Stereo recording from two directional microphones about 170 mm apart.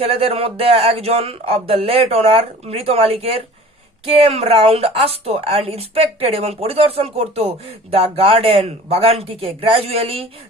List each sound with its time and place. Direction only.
0.0 s a woman's voice: 35° right (ahead or behind)